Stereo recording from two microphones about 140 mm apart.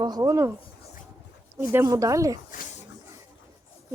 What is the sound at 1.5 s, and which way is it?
Speech, 25° right (ahead or behind).